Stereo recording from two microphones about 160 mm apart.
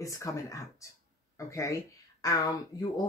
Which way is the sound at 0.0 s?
20° left (ahead or behind).